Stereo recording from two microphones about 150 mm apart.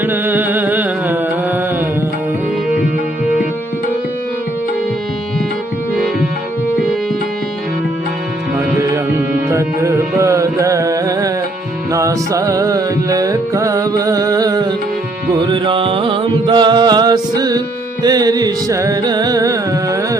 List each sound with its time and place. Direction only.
0.0 s music: 15° right (ahead or behind)
8.8 s music: 20° right (ahead or behind)